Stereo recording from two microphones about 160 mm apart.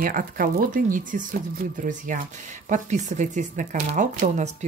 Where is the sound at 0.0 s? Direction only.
60° right (ahead or behind).